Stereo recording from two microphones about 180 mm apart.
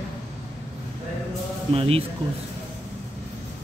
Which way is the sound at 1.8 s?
30° right (ahead or behind).